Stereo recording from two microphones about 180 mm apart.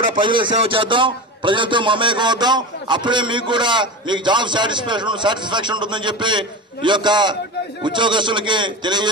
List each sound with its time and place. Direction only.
0.1 s a man's voice: 25° right (ahead or behind)